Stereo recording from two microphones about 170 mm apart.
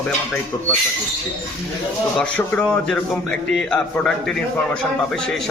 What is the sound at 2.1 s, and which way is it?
Speech, 5° left (ahead or behind).